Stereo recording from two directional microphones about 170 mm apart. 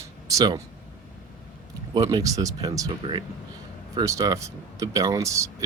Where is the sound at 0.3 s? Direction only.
20° right (ahead or behind).